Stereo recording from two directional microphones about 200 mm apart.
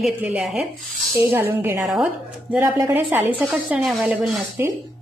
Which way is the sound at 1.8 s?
Centre (ahead or behind).